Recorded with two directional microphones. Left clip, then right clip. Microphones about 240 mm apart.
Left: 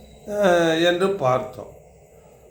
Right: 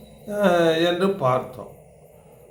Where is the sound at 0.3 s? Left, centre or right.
Centre.